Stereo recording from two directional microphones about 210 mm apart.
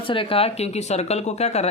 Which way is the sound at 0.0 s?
25° left (ahead or behind).